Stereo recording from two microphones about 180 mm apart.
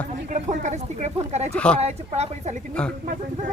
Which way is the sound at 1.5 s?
5° left (ahead or behind).